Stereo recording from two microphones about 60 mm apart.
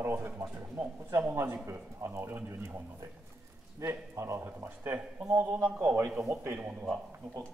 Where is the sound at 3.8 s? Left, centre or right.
Right.